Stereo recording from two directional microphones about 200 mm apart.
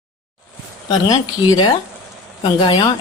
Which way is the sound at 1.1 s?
20° left (ahead or behind).